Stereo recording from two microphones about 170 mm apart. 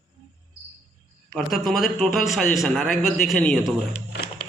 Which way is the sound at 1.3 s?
Centre (ahead or behind).